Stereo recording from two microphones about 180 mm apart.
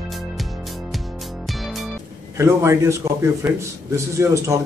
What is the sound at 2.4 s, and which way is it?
A man's voice, 15° right (ahead or behind).